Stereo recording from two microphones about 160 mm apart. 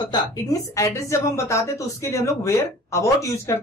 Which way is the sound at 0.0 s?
25° left (ahead or behind).